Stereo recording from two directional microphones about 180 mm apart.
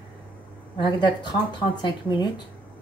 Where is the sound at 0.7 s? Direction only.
25° left (ahead or behind).